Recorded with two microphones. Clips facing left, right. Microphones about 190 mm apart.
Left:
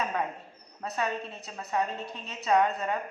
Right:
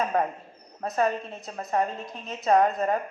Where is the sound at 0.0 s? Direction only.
45° right (ahead or behind).